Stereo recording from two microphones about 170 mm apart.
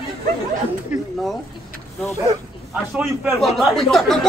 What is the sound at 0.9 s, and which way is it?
Speech, centre (ahead or behind).